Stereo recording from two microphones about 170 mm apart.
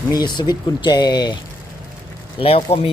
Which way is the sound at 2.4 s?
35° left (ahead or behind).